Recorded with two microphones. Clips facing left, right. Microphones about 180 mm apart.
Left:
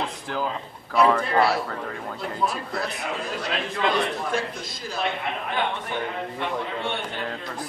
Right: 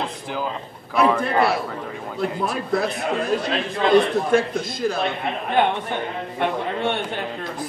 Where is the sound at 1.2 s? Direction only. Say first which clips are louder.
Right 2 dB; 55° right (ahead or behind).